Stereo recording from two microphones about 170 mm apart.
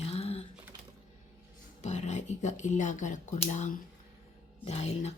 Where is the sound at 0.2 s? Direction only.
35° left (ahead or behind).